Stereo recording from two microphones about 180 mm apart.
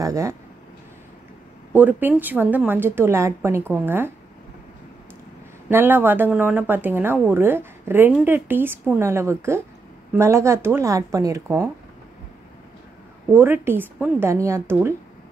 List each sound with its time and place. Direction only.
0.0 s a woman's voice: 15° right (ahead or behind)
1.7 s a woman's voice: 10° right (ahead or behind)
5.7 s a woman's voice: 10° right (ahead or behind)
13.3 s a woman's voice: 10° right (ahead or behind)